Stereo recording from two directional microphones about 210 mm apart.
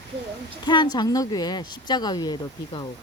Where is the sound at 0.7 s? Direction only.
20° left (ahead or behind).